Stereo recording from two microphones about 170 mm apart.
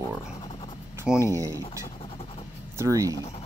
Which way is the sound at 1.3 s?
20° right (ahead or behind).